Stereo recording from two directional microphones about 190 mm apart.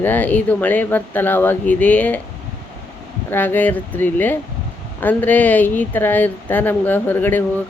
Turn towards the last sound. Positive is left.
turn(degrees=10)  # may be behind; listen again after turning